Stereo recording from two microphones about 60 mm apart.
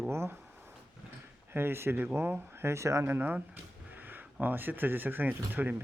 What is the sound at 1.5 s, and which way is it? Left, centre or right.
Speech, right.